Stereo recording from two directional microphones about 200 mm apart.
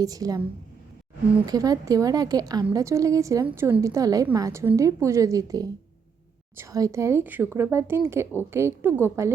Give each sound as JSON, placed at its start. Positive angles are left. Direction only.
{"t": 0.0, "sound": "a woman's voice", "side_deg": -20}
{"t": 1.5, "sound": "a woman's voice", "side_deg": -20}